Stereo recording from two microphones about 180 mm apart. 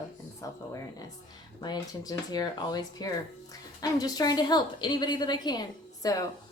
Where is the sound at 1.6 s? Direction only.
20° left (ahead or behind).